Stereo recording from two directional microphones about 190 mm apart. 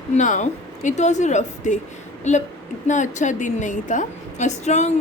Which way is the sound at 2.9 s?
40° left (ahead or behind).